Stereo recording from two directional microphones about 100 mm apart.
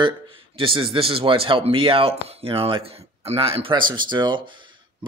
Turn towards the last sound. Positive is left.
turn(degrees=-50)  # may be behind; listen again after turning